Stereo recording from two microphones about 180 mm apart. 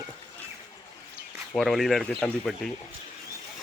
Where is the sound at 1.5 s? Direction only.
Centre (ahead or behind).